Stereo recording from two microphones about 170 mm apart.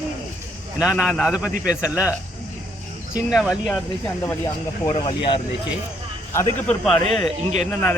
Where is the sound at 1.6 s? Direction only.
20° left (ahead or behind).